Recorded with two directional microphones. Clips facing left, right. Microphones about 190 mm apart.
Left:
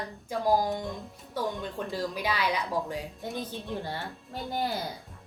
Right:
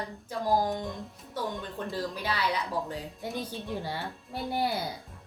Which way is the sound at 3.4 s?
10° right (ahead or behind).